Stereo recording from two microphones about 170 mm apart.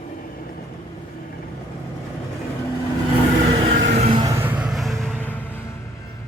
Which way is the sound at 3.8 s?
40° right (ahead or behind).